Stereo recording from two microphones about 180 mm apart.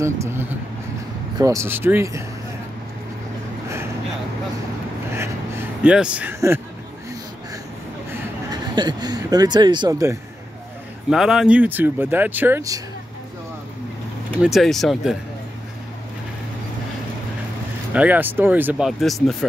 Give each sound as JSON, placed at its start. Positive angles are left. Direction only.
{"t": 0.0, "sound": "speech", "side_deg": -15}
{"t": 5.1, "sound": "a sound", "side_deg": -15}
{"t": 8.1, "sound": "speech", "side_deg": -20}
{"t": 11.1, "sound": "speech", "side_deg": -5}
{"t": 14.4, "sound": "speech", "side_deg": 0}
{"t": 17.9, "sound": "speech", "side_deg": -10}